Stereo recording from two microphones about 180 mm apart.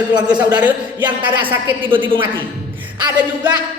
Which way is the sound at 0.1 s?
25° right (ahead or behind).